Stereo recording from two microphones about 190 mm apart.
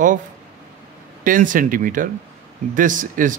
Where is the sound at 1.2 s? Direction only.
45° right (ahead or behind).